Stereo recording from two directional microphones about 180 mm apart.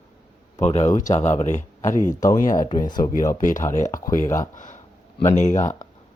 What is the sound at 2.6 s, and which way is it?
Speech, 25° left (ahead or behind).